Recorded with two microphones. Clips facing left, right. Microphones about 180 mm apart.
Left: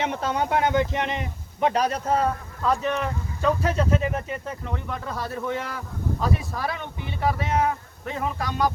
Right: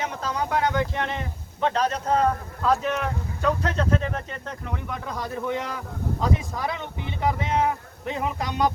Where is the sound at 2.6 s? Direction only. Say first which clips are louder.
Right 1 dB; centre (ahead or behind).